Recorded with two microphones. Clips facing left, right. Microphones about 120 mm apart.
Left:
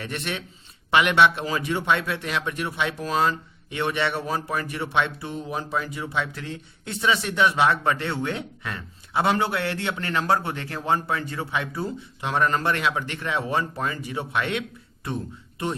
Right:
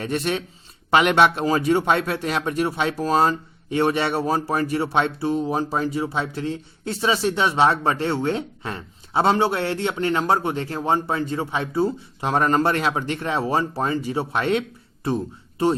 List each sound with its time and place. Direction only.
0.0 s a man's voice: 40° right (ahead or behind)
12.2 s a man's voice: 40° right (ahead or behind)